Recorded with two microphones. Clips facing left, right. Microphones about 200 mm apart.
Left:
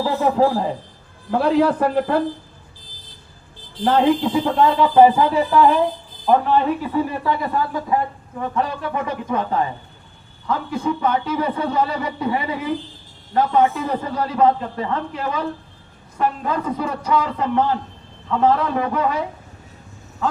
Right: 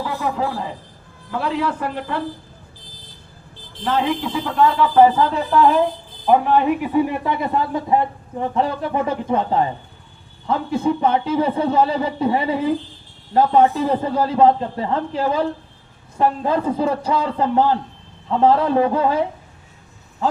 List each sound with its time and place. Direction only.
0.0 s speech: 35° left (ahead or behind)
3.8 s a man's voice: 30° left (ahead or behind); by 19.2 s 30° right (ahead or behind)